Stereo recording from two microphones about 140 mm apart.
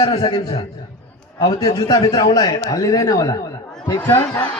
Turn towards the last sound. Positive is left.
turn(degrees=25)  # may be behind; listen again after turning